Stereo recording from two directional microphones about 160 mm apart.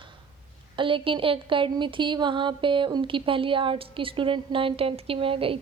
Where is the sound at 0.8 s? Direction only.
35° right (ahead or behind).